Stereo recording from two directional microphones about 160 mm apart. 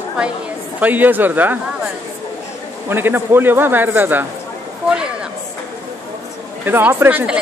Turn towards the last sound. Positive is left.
turn(degrees=-10)  # may be behind; listen again after turning